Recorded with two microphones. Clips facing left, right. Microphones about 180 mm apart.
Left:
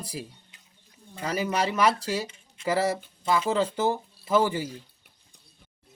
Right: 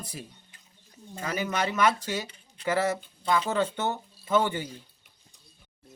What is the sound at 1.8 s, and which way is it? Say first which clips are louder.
Speech: even; 30° left (ahead or behind).